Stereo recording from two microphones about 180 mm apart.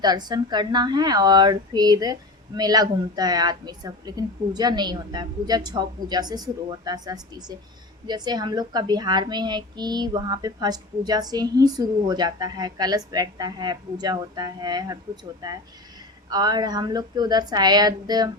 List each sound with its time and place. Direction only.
0.0 s a child's voice: 20° right (ahead or behind)